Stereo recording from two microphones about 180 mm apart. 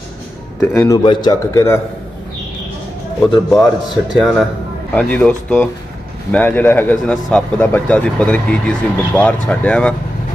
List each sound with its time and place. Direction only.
0.6 s a man's voice: 15° left (ahead or behind)
3.4 s a man's voice: centre (ahead or behind)